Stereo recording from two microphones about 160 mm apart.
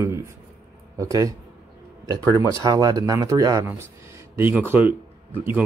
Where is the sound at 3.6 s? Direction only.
15° right (ahead or behind).